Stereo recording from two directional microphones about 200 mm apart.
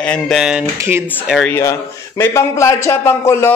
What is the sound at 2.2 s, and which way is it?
A man's voice, 15° left (ahead or behind).